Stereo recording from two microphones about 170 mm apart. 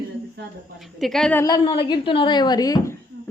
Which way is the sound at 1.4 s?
20° left (ahead or behind).